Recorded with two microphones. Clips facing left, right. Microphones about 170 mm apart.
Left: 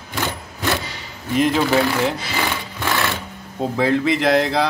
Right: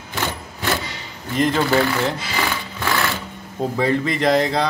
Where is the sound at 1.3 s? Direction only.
5° left (ahead or behind).